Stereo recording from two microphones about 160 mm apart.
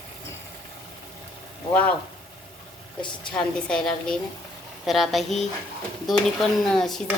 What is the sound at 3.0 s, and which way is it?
Speech, 30° left (ahead or behind).